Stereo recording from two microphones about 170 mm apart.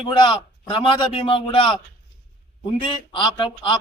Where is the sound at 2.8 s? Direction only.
30° left (ahead or behind).